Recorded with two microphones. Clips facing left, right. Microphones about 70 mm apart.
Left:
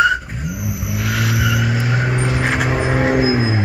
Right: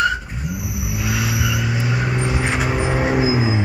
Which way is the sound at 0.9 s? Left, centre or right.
Left.